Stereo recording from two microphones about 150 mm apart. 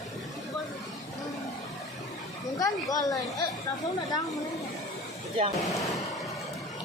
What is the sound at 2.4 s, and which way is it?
Chatter, 25° left (ahead or behind).